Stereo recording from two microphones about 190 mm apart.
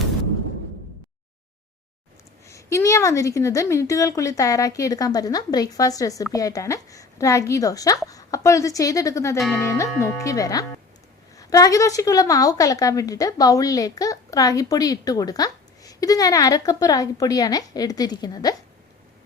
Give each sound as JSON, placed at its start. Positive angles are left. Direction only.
{"t": 2.5, "sound": "a woman's voice", "side_deg": 15}